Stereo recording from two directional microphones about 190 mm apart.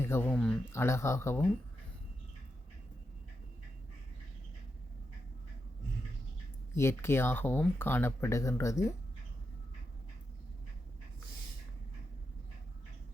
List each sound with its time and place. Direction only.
0.0 s speech: 15° left (ahead or behind)
0.7 s speech: 15° left (ahead or behind)
6.7 s speech: 15° left (ahead or behind)